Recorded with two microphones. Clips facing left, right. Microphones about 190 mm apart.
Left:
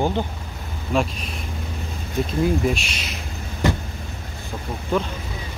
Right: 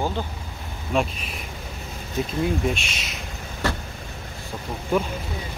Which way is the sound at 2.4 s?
Centre (ahead or behind).